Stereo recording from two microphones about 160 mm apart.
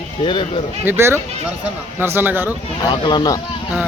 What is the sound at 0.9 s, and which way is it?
Speech, 15° right (ahead or behind).